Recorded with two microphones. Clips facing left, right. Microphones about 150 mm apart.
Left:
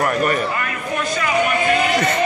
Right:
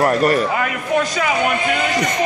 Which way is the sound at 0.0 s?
35° right (ahead or behind).